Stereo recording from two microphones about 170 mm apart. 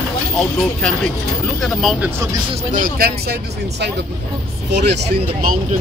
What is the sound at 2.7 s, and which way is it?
Speech, 55° right (ahead or behind).